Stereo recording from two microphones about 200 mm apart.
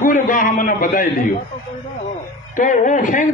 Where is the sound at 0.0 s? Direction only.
40° left (ahead or behind).